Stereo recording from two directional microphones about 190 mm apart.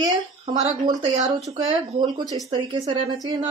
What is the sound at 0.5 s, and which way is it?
Speech, 25° right (ahead or behind).